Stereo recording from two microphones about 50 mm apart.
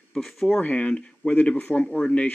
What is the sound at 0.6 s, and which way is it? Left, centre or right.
Speech, left.